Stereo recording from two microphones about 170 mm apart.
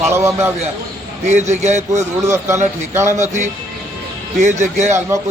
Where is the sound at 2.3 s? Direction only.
15° right (ahead or behind).